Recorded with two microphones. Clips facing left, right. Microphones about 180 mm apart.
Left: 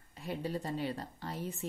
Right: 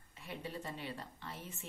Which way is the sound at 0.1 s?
35° left (ahead or behind).